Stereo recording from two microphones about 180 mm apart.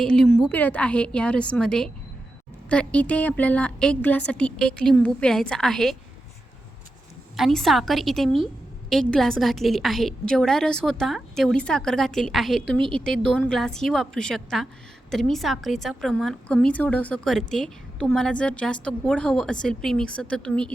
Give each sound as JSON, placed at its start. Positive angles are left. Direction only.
{"t": 0.0, "sound": "a woman's voice", "side_deg": 5}
{"t": 7.3, "sound": "a woman's voice", "side_deg": 0}